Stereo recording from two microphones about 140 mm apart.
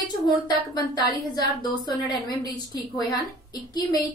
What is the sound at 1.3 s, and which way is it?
A woman's voice, 30° left (ahead or behind).